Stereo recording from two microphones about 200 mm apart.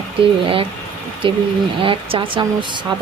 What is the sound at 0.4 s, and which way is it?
Speech, 25° right (ahead or behind).